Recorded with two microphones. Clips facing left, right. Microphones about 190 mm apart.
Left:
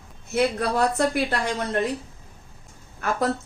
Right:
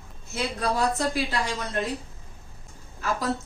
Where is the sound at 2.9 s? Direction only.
60° left (ahead or behind).